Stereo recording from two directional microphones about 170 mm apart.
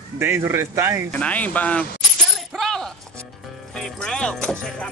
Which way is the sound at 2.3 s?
Centre (ahead or behind).